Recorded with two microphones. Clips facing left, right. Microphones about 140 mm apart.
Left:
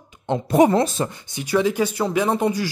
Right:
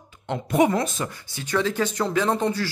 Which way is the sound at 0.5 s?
35° left (ahead or behind).